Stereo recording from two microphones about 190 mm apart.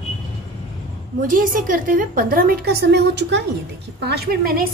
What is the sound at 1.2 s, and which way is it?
A woman's voice, 45° right (ahead or behind).